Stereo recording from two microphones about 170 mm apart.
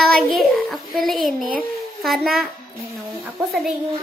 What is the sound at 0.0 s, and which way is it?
Child singing, centre (ahead or behind).